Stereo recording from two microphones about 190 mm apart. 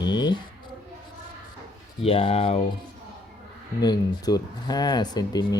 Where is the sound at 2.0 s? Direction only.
30° left (ahead or behind).